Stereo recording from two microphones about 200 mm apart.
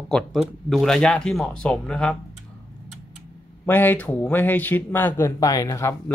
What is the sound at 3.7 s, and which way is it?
Speech, 10° left (ahead or behind).